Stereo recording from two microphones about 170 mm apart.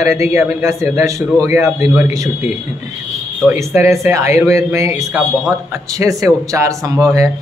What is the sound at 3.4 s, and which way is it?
A man's voice, 15° right (ahead or behind).